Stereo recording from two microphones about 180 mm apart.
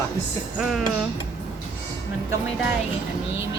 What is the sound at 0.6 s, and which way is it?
Speech, centre (ahead or behind).